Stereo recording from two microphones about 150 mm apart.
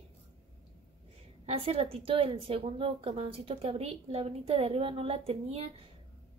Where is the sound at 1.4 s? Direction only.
40° right (ahead or behind).